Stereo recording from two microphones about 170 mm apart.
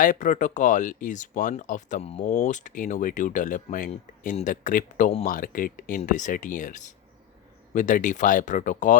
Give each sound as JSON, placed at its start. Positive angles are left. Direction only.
{"t": 0.0, "sound": "speech", "side_deg": 50}
{"t": 2.2, "sound": "speech", "side_deg": 55}